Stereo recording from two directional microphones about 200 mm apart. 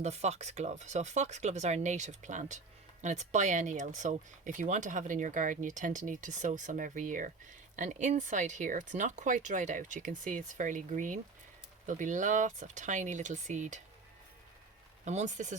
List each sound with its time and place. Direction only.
0.0 s speech: 35° right (ahead or behind)
15.0 s speech: 35° right (ahead or behind)